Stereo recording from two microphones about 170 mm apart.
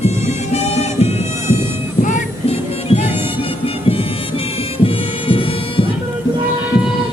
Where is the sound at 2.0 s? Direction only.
45° left (ahead or behind); by 5.9 s 30° left (ahead or behind).